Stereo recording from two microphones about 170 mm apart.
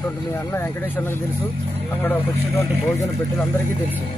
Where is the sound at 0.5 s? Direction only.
15° left (ahead or behind).